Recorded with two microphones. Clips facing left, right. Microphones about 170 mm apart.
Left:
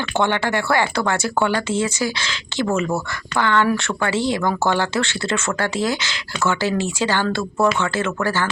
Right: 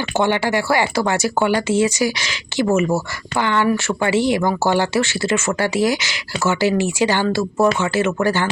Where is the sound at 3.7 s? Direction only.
5° right (ahead or behind).